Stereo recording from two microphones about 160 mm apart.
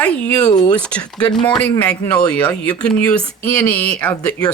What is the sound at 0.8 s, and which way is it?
Speech, 5° left (ahead or behind).